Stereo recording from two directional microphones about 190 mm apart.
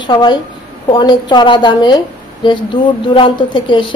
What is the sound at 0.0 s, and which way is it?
A woman's voice, 25° left (ahead or behind).